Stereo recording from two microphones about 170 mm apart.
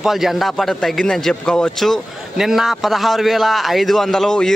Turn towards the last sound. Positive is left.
turn(degrees=5)  # may be behind; listen again after turning